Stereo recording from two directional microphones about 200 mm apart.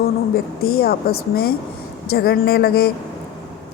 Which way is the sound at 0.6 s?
50° left (ahead or behind).